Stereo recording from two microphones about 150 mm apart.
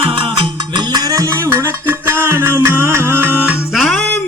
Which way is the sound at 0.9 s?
20° right (ahead or behind).